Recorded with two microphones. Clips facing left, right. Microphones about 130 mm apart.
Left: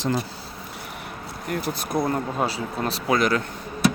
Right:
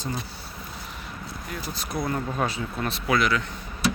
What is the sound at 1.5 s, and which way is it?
Speech, 55° left (ahead or behind).